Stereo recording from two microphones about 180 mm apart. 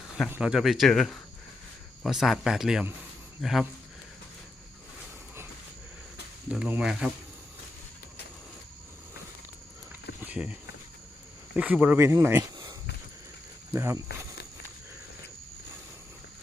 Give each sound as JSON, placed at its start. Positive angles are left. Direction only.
{"t": 0.3, "sound": "speech", "side_deg": -5}
{"t": 6.5, "sound": "speech", "side_deg": -5}
{"t": 10.2, "sound": "a sound", "side_deg": -5}
{"t": 11.5, "sound": "speech", "side_deg": -10}
{"t": 13.7, "sound": "speech", "side_deg": -15}